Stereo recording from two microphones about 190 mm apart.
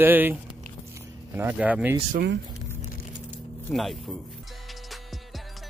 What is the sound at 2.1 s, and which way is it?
Speech, 65° right (ahead or behind).